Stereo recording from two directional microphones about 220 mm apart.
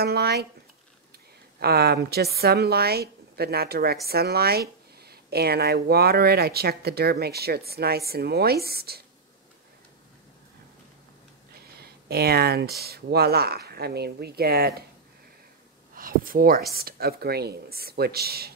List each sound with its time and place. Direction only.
0.0 s a woman's voice: 45° right (ahead or behind)
1.6 s a woman's voice: 45° right (ahead or behind)
11.8 s a woman's voice: 45° right (ahead or behind)
15.9 s a woman's voice: 40° right (ahead or behind)